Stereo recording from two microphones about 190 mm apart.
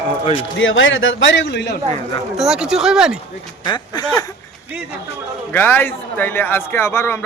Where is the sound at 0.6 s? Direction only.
90° left; by 1.8 s 65° left (ahead or behind).